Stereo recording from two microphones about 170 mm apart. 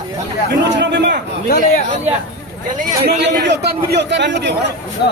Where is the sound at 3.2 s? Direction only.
90° right.